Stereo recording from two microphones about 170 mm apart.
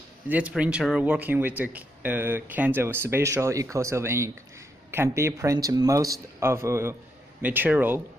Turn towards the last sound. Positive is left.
turn(degrees=-10)  # may be behind; listen again after turning